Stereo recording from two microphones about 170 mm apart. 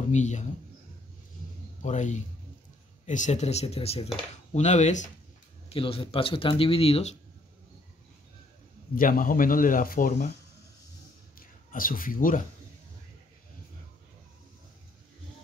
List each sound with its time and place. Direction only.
0.1 s speech: 45° left (ahead or behind)
1.8 s speech: 45° left (ahead or behind)
5.7 s speech: 35° left (ahead or behind)
8.9 s speech: 55° left (ahead or behind)
11.3 s a man's voice: 55° left (ahead or behind)